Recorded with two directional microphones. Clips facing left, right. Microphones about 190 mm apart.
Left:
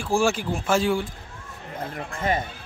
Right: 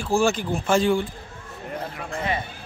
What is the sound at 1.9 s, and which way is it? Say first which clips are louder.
Speech: left 4 dB; 45° left (ahead or behind).